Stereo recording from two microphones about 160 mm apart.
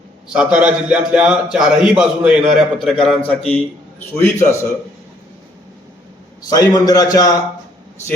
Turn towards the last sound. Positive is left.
turn(degrees=25)  # may be behind; listen again after turning